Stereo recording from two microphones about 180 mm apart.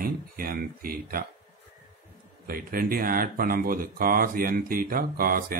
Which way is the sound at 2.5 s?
55° right (ahead or behind).